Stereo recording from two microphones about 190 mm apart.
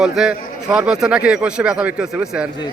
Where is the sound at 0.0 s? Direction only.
5° right (ahead or behind).